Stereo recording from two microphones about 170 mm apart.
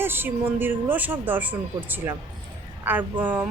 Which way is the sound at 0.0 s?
10° right (ahead or behind).